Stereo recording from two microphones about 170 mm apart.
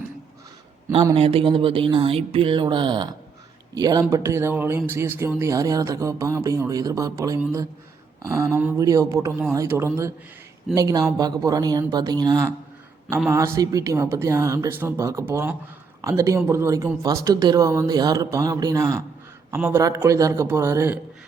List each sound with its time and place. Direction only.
1.1 s speech: 35° right (ahead or behind)
13.6 s speech: 20° right (ahead or behind)